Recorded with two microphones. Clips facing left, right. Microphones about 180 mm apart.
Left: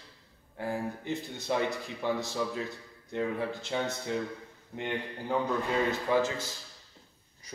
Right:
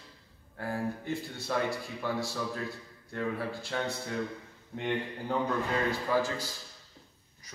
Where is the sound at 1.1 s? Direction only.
20° left (ahead or behind).